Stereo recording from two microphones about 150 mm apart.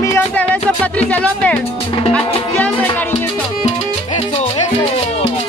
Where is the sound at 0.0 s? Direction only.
15° left (ahead or behind).